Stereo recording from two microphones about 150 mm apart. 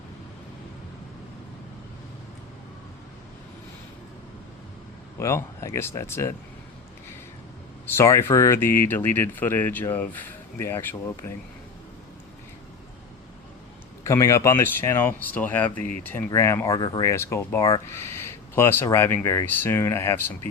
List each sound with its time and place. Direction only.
5.2 s speech: 20° left (ahead or behind)
7.9 s speech: 15° left (ahead or behind)
14.0 s speech: 20° left (ahead or behind)